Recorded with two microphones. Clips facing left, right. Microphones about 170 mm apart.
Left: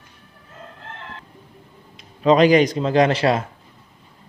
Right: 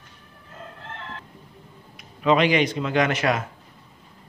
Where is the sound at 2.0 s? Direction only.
35° left (ahead or behind).